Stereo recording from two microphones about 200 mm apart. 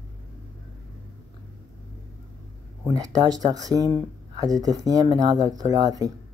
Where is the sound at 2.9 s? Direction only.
15° right (ahead or behind).